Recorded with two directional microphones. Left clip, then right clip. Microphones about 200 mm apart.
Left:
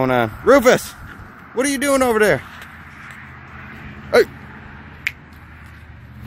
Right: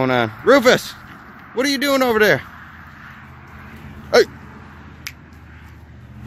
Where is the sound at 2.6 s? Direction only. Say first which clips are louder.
Left 2 dB; 45° left (ahead or behind).